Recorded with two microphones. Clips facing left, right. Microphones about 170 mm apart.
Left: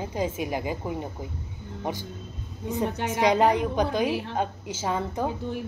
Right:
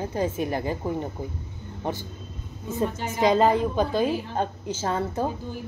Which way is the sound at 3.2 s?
20° left (ahead or behind).